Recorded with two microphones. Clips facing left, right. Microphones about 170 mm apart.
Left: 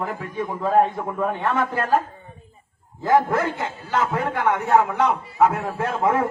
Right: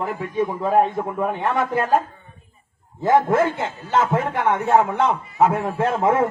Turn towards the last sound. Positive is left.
turn(degrees=-25)  # may be behind; listen again after turning